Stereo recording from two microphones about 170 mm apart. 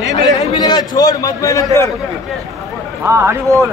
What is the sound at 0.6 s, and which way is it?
A man's voice, 25° left (ahead or behind).